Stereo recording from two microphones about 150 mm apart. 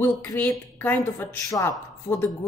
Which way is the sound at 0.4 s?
10° left (ahead or behind).